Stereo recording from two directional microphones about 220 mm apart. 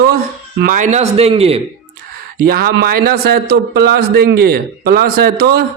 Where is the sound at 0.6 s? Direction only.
35° right (ahead or behind).